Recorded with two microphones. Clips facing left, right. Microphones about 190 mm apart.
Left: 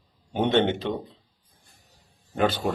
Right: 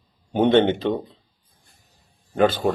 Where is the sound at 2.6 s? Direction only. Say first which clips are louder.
Right 5 dB; 45° right (ahead or behind).